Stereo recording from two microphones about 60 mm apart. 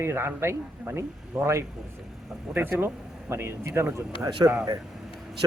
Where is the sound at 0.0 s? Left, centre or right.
Right.